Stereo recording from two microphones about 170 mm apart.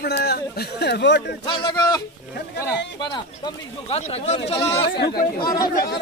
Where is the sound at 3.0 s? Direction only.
25° left (ahead or behind).